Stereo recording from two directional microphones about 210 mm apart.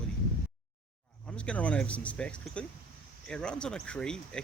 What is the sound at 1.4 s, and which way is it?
Speech, 5° left (ahead or behind).